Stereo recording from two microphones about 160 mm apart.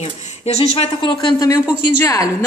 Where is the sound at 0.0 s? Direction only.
40° left (ahead or behind).